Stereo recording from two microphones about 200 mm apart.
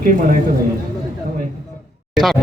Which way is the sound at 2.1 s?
Centre (ahead or behind).